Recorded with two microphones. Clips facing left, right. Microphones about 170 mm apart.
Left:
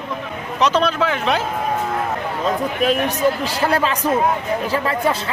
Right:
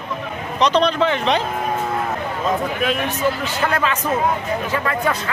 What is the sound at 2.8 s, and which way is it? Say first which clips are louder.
A man's voice: left 6 dB; 40° left (ahead or behind).